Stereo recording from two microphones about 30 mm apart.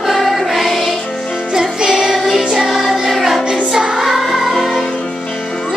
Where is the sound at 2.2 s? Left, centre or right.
Centre.